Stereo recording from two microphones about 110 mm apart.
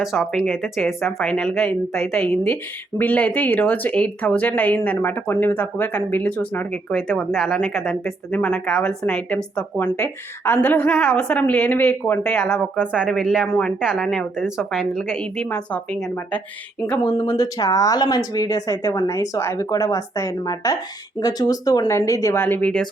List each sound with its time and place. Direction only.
0.0 s speech: centre (ahead or behind)
3.0 s speech: 15° left (ahead or behind)
6.9 s speech: centre (ahead or behind)
9.7 s speech: 20° left (ahead or behind); by 13.5 s 5° right (ahead or behind)
13.5 s speech: 5° left (ahead or behind)
15.1 s speech: 10° left (ahead or behind)
17.2 s speech: 25° left (ahead or behind)
22.4 s speech: 20° left (ahead or behind)